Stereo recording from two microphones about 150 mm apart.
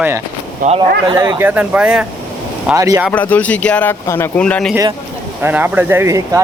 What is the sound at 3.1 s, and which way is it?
Speech, 10° left (ahead or behind).